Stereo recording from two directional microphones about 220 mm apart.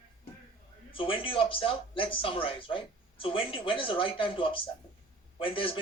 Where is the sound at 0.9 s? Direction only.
25° left (ahead or behind).